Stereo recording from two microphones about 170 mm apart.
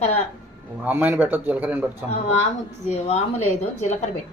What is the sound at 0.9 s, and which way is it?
Speech, 10° right (ahead or behind).